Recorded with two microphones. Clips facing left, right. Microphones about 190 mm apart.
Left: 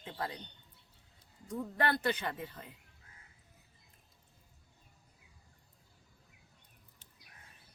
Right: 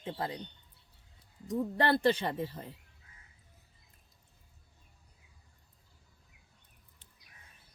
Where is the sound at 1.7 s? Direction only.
30° right (ahead or behind).